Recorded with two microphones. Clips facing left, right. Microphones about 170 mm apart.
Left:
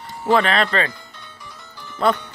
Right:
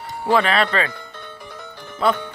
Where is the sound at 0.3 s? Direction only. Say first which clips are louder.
Even; 10° right (ahead or behind).